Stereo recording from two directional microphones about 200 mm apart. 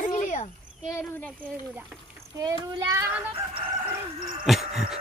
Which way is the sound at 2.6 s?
20° right (ahead or behind).